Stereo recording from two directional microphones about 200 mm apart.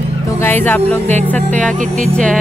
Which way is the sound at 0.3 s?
10° left (ahead or behind).